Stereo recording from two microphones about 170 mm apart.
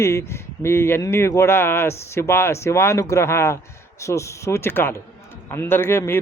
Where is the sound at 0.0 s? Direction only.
15° left (ahead or behind).